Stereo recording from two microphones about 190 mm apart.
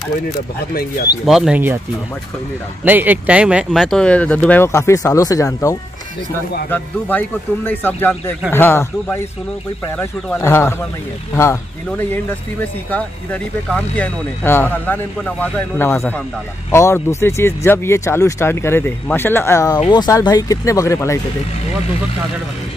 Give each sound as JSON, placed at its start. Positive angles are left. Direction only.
{"t": 1.2, "sound": "speech", "side_deg": 0}
{"t": 2.8, "sound": "speech", "side_deg": -10}
{"t": 12.9, "sound": "speech", "side_deg": 5}